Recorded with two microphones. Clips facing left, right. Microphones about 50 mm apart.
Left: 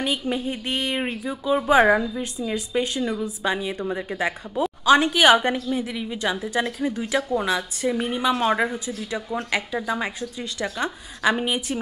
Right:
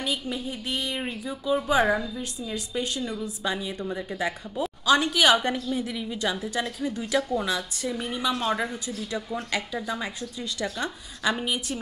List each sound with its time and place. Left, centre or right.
0.0 s speech: left
1.2 s a woman's voice: left
5.4 s a woman's voice: centre